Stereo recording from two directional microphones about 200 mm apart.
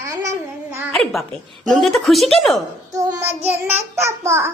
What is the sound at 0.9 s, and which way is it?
Speech, centre (ahead or behind).